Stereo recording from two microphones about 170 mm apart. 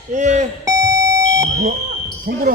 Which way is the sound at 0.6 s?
20° right (ahead or behind).